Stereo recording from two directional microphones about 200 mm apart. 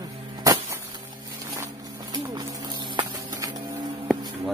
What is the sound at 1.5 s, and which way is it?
Music, 20° right (ahead or behind).